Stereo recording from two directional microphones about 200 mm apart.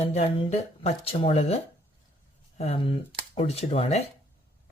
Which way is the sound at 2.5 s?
30° left (ahead or behind).